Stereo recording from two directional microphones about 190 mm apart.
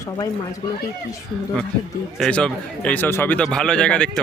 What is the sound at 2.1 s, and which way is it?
Speech, 5° left (ahead or behind).